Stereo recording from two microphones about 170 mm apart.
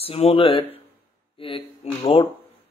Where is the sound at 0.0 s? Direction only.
35° left (ahead or behind).